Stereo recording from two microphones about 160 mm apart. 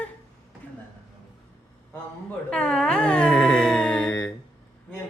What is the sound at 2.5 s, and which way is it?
Dog, 5° left (ahead or behind).